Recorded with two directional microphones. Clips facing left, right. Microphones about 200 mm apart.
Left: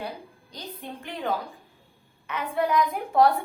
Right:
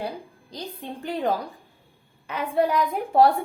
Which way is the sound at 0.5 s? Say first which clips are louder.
Right 4 dB; 35° right (ahead or behind).